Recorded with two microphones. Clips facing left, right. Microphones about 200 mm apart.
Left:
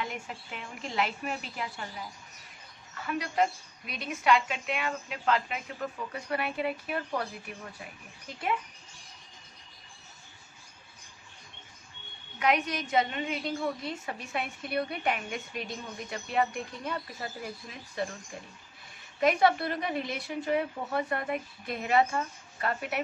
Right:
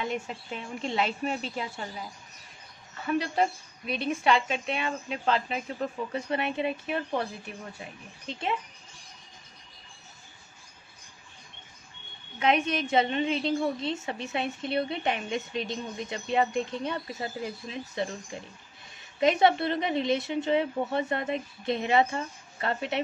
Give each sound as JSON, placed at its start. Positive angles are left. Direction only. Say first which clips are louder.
{"t": 0.0, "sound": "a woman's voice", "louder": "right 5 dB", "side_deg": -25}
{"t": 3.1, "sound": "a woman's voice", "louder": "right 2 dB", "side_deg": -30}
{"t": 12.4, "sound": "a woman's voice", "louder": "right 3 dB", "side_deg": -25}
{"t": 19.1, "sound": "a woman's voice", "louder": "right 2 dB", "side_deg": -20}